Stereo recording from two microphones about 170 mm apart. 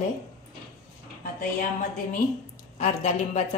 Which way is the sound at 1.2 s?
55° left (ahead or behind).